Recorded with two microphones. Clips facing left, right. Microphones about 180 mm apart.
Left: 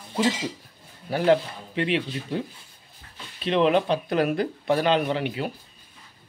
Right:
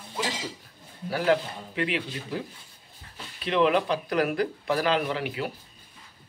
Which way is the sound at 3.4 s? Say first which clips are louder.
Left 2 dB; 25° left (ahead or behind).